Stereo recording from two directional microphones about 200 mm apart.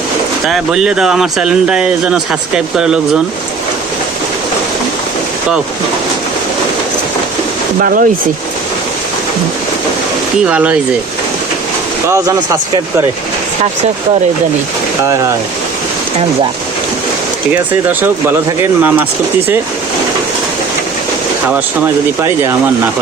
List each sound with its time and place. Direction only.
0.4 s speech: centre (ahead or behind)
7.8 s speech: 45° right (ahead or behind)
10.4 s speech: 5° right (ahead or behind)
12.0 s speech: 15° right (ahead or behind)
17.5 s speech: 10° right (ahead or behind)